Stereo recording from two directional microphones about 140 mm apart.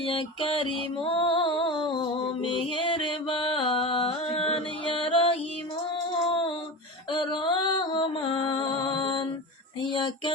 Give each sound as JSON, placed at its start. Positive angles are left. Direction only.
{"t": 0.0, "sound": "mantra", "side_deg": 40}
{"t": 1.0, "sound": "music", "side_deg": 40}
{"t": 6.2, "sound": "female singing", "side_deg": 40}
{"t": 7.1, "sound": "music", "side_deg": 35}